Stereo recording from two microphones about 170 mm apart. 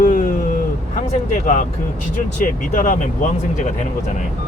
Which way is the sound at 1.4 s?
50° left (ahead or behind).